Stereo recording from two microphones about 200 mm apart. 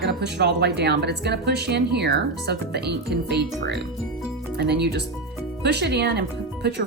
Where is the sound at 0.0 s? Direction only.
60° right (ahead or behind).